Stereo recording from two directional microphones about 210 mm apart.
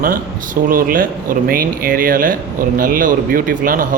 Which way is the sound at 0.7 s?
40° right (ahead or behind).